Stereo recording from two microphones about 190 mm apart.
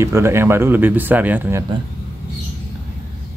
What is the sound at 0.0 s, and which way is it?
Speech, 15° right (ahead or behind).